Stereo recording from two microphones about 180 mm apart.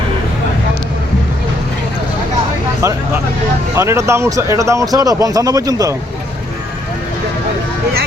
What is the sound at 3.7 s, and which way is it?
Speech, 15° right (ahead or behind).